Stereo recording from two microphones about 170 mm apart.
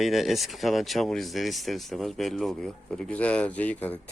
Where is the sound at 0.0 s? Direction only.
Centre (ahead or behind).